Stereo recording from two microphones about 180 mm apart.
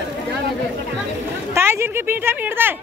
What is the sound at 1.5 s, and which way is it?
A woman's voice, 15° right (ahead or behind).